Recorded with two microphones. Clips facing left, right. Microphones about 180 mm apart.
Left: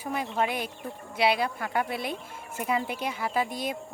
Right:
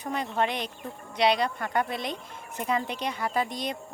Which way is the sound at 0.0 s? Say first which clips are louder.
Right 1 dB; 5° left (ahead or behind).